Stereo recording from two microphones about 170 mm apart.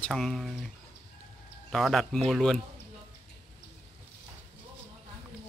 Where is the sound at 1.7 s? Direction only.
Centre (ahead or behind).